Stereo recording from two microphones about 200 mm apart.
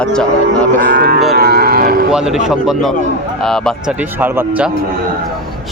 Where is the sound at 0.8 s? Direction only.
55° right (ahead or behind).